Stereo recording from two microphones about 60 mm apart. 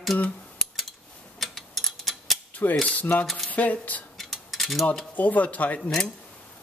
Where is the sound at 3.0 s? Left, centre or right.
Left.